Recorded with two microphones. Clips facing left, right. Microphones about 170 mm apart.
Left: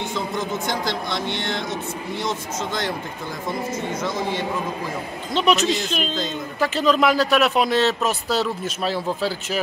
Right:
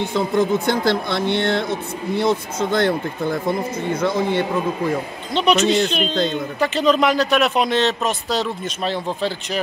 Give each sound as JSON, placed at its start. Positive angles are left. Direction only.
{"t": 0.0, "sound": "speech", "side_deg": -55}
{"t": 5.3, "sound": "speech", "side_deg": 0}